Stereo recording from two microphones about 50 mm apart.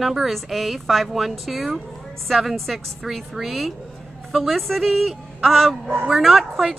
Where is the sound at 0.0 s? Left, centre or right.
Centre.